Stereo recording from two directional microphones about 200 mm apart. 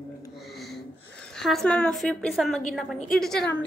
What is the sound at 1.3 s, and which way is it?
A woman's voice, centre (ahead or behind).